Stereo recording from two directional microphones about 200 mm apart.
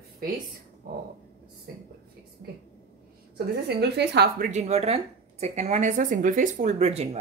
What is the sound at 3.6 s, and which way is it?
Speech, 55° right (ahead or behind).